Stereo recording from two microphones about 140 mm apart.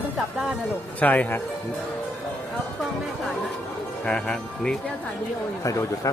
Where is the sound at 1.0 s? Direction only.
10° left (ahead or behind).